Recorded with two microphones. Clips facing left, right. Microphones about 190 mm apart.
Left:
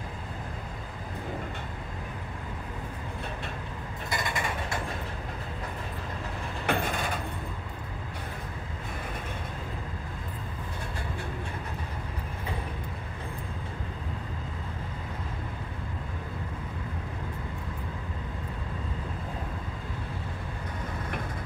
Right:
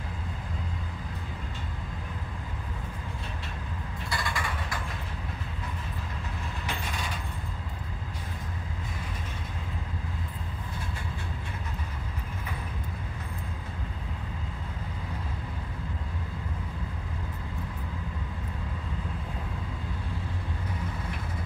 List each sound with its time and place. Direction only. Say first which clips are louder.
4.1 s mechanisms: left 2 dB; 20° left (ahead or behind)
6.6 s vehicle: left 9 dB; 55° left (ahead or behind)